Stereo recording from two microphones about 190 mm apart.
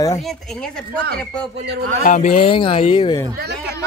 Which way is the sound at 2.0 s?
45° left (ahead or behind).